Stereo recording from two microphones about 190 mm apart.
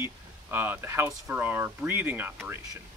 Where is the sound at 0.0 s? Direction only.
10° right (ahead or behind).